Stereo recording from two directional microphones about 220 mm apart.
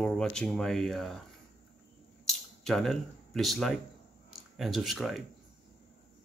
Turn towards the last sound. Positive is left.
turn(degrees=0)  # may be behind; listen again after turning